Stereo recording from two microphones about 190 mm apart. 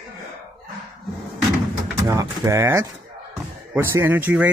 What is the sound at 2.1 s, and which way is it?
Speech, 15° right (ahead or behind).